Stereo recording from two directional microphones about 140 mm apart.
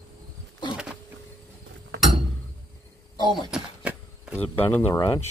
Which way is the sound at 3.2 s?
30° left (ahead or behind).